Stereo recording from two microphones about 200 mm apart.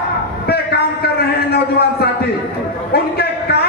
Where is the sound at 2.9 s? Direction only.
55° left (ahead or behind).